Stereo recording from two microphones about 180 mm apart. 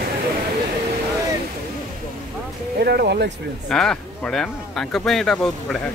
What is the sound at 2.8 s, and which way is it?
Music, 60° right (ahead or behind).